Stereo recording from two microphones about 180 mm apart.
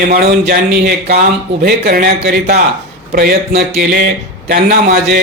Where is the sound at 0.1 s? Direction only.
55° right (ahead or behind).